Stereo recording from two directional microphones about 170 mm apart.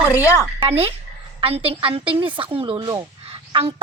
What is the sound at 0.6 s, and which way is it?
A woman's voice, 35° right (ahead or behind).